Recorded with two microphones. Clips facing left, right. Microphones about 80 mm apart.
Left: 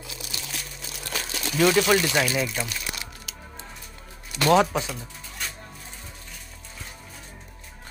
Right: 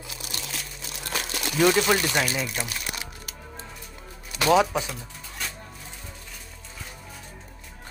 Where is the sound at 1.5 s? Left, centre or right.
Centre.